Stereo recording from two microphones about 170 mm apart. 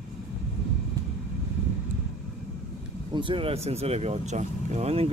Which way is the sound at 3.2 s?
30° right (ahead or behind).